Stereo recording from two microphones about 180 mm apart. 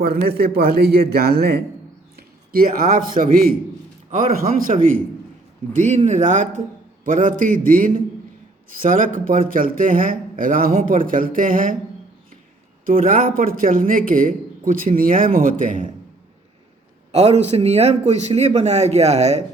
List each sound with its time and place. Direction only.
0.0 s a man's voice: 60° right (ahead or behind)
5.7 s a man's voice: 40° right (ahead or behind)
12.8 s a man's voice: 50° right (ahead or behind)
17.1 s a man's voice: 35° right (ahead or behind)